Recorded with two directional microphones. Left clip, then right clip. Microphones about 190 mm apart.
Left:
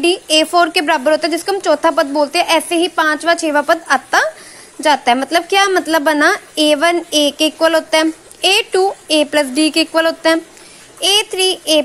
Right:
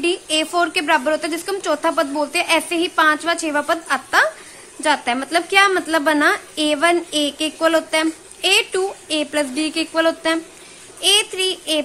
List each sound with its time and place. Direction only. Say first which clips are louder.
0.0 s a woman's voice: left 7 dB; 25° left (ahead or behind)